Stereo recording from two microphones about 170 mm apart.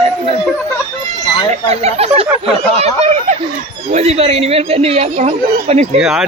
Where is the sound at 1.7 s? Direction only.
40° right (ahead or behind).